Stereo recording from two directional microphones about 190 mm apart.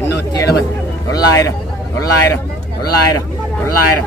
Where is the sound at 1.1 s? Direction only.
15° left (ahead or behind).